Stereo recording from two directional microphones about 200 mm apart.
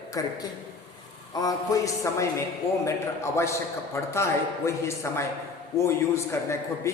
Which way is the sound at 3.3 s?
15° left (ahead or behind).